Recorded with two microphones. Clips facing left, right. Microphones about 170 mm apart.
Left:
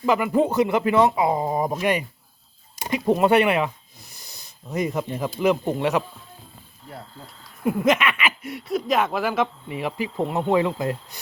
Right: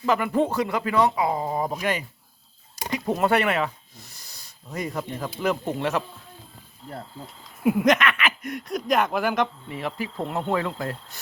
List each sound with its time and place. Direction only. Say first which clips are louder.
0.0 s speech: left 2 dB; 10° left (ahead or behind)
0.5 s speech: left 4 dB; 20° left (ahead or behind)
7.6 s speech: right 2 dB; 5° right (ahead or behind)
7.9 s speech: even; 10° left (ahead or behind)